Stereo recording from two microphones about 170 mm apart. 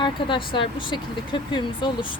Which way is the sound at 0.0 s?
30° left (ahead or behind).